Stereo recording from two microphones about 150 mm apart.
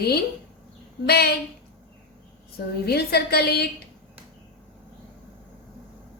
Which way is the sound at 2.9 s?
90° left.